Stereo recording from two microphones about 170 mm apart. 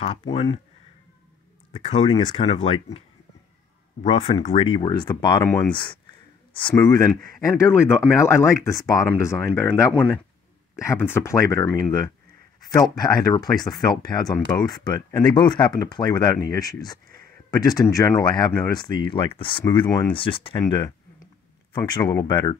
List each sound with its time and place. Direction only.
2.0 s speech: 35° left (ahead or behind)
4.0 s speech: 35° left (ahead or behind)
4.7 s speech: 25° left (ahead or behind)
12.7 s speech: 25° left (ahead or behind)